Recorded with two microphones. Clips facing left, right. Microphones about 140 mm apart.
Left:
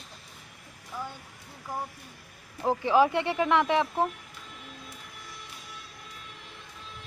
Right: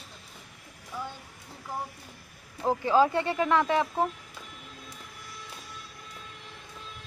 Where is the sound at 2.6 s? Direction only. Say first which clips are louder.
Even; 15° left (ahead or behind).